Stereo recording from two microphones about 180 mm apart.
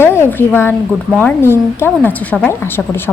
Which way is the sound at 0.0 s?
15° left (ahead or behind).